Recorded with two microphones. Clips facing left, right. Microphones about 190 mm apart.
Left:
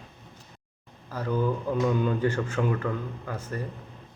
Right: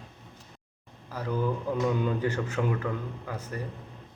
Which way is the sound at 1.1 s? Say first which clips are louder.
Left 2 dB; 10° right (ahead or behind).